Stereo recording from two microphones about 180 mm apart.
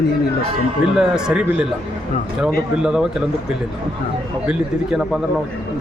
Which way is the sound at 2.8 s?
5° right (ahead or behind).